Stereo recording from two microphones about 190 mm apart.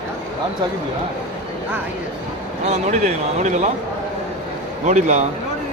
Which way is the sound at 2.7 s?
40° right (ahead or behind).